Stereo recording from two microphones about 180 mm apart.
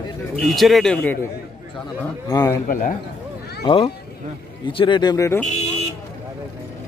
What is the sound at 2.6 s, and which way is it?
Speech, 50° left (ahead or behind).